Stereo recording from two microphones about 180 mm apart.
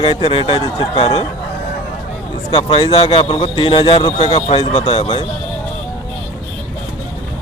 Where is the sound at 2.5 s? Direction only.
30° left (ahead or behind).